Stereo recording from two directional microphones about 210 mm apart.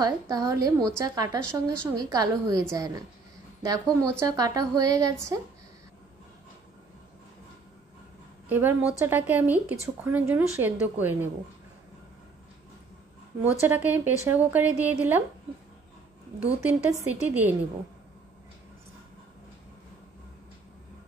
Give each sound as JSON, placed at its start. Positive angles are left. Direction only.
{"t": 0.0, "sound": "speech", "side_deg": -15}
{"t": 1.4, "sound": "a woman's voice", "side_deg": 5}
{"t": 2.0, "sound": "speech", "side_deg": -15}
{"t": 3.6, "sound": "speech", "side_deg": -15}
{"t": 8.5, "sound": "speech", "side_deg": -10}
{"t": 13.4, "sound": "speech", "side_deg": -10}
{"t": 16.6, "sound": "speech", "side_deg": -10}